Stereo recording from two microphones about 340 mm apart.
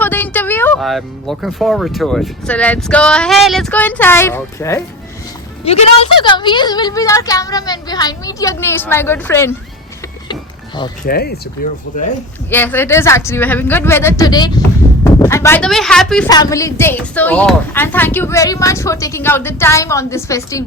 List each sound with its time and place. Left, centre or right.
0.0 s speech: centre
5.6 s a woman's voice: centre
11.0 s speech: left
12.5 s a woman's voice: centre